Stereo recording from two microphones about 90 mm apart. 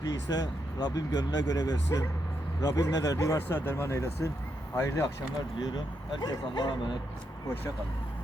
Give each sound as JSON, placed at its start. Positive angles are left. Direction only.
{"t": 0.0, "sound": "a man's voice", "side_deg": 45}
{"t": 3.3, "sound": "a man's voice", "side_deg": 25}
{"t": 5.7, "sound": "speech", "side_deg": 50}